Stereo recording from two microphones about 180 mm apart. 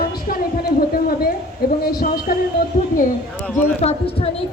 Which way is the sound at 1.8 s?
55° left (ahead or behind).